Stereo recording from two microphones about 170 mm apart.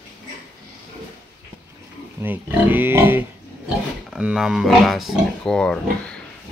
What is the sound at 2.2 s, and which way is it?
Speech, 10° right (ahead or behind).